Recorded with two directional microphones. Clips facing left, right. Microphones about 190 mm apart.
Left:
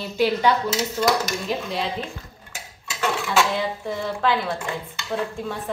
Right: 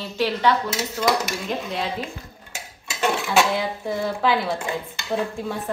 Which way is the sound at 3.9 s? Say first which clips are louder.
Right 2 dB; 10° right (ahead or behind).